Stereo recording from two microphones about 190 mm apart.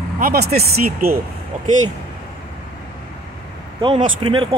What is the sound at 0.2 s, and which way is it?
Speech, 55° right (ahead or behind).